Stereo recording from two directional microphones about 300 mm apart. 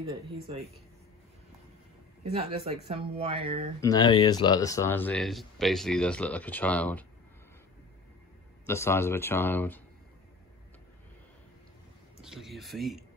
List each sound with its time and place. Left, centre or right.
2.2 s speech: right
3.8 s speech: centre
8.6 s speech: centre
12.2 s speech: centre